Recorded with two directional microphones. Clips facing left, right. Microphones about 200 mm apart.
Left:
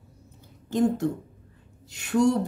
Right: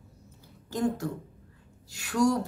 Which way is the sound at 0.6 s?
20° left (ahead or behind).